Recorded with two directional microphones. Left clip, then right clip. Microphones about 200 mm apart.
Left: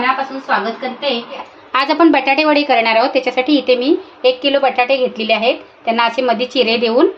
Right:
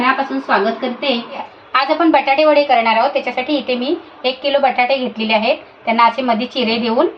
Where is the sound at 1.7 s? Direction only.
55° left (ahead or behind).